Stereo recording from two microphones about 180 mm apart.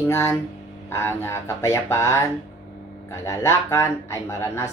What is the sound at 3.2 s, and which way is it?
Speech, 15° left (ahead or behind).